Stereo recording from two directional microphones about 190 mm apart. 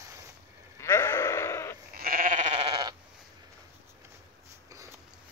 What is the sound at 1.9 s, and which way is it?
Sheep, 50° right (ahead or behind).